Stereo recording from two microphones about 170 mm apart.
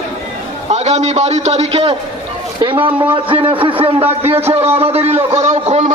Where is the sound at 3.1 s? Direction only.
30° right (ahead or behind).